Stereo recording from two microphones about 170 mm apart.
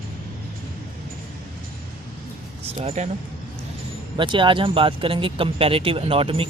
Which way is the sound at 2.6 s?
40° right (ahead or behind).